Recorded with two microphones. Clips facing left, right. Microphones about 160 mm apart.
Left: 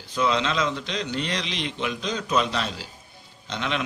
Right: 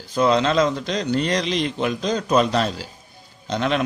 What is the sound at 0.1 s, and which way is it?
Speech, 40° right (ahead or behind).